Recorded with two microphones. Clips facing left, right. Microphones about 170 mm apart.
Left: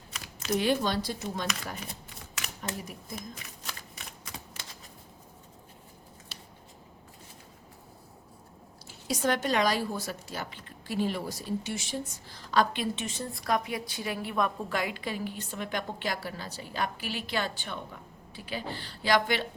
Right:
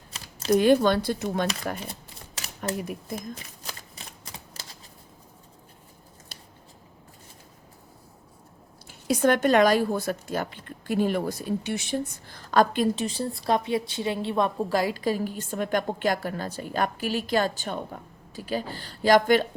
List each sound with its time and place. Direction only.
0.1 s a sound: 35° right (ahead or behind)
0.6 s speech: 50° right (ahead or behind)
3.3 s shuffling cards: 35° right (ahead or behind)
8.9 s a woman's voice: 55° right (ahead or behind)